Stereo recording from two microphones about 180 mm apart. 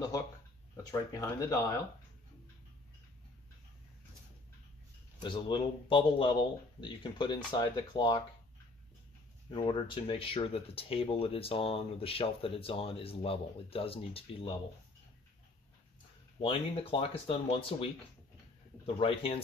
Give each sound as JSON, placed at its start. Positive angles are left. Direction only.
{"t": 1.1, "sound": "speech", "side_deg": 15}
{"t": 5.2, "sound": "speech", "side_deg": 25}
{"t": 9.5, "sound": "speech", "side_deg": 25}
{"t": 16.3, "sound": "speech", "side_deg": 30}
{"t": 18.9, "sound": "speech", "side_deg": 30}